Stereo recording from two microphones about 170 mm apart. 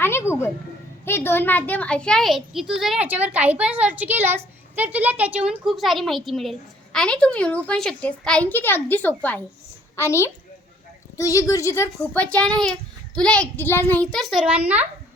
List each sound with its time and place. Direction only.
0.0 s a woman's voice: 15° left (ahead or behind); by 14.8 s 10° right (ahead or behind)